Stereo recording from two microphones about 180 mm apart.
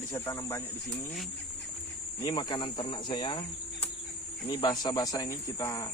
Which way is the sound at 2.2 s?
25° left (ahead or behind).